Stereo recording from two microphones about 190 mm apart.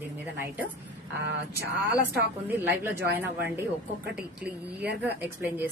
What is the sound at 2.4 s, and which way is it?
A woman's voice, 10° right (ahead or behind).